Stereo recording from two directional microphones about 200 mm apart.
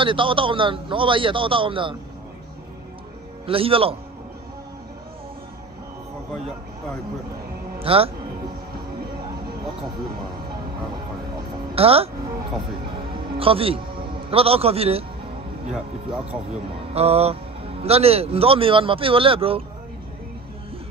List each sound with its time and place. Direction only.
0.0 s speech: 25° right (ahead or behind)
3.4 s speech: 30° right (ahead or behind)
7.8 s speech: 30° right (ahead or behind)
11.7 s speech: 30° right (ahead or behind)
13.4 s speech: 30° right (ahead or behind)
15.7 s speech: 5° right (ahead or behind)
16.9 s speech: 30° right (ahead or behind)